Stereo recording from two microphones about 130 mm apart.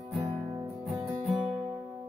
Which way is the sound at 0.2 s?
20° right (ahead or behind).